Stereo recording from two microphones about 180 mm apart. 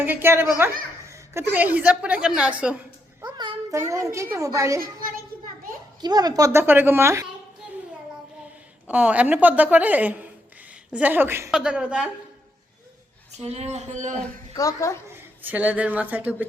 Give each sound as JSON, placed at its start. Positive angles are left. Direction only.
{"t": 0.0, "sound": "a woman's voice", "side_deg": -10}
{"t": 3.2, "sound": "a child's voice", "side_deg": -25}
{"t": 6.0, "sound": "a woman's voice", "side_deg": -20}
{"t": 8.9, "sound": "a woman's voice", "side_deg": -10}
{"t": 13.4, "sound": "speech", "side_deg": -35}
{"t": 14.5, "sound": "a woman's voice", "side_deg": 15}
{"t": 15.1, "sound": "speech", "side_deg": -10}